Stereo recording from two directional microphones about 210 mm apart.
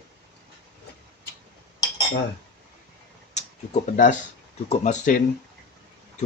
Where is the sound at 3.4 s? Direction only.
35° left (ahead or behind).